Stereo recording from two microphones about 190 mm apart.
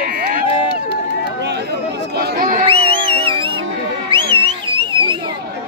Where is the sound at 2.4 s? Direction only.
45° right (ahead or behind).